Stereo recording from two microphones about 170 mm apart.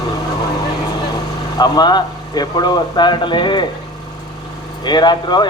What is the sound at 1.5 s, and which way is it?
Mantra, 25° left (ahead or behind).